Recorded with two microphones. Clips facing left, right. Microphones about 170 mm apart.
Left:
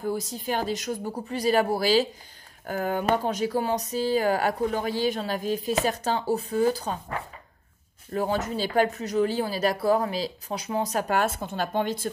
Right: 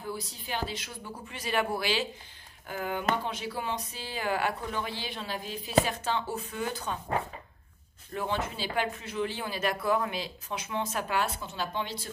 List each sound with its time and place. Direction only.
0.0 s speech: 45° left (ahead or behind)
8.1 s speech: 40° left (ahead or behind)